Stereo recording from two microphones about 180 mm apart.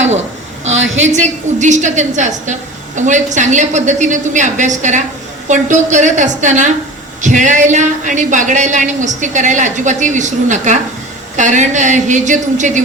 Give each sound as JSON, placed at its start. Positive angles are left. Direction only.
{"t": 0.8, "sound": "a woman's voice", "side_deg": -90}
{"t": 1.0, "sound": "a woman's voice", "side_deg": -40}